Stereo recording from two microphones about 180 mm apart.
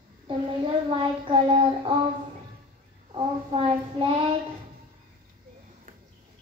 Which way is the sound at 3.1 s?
30° right (ahead or behind).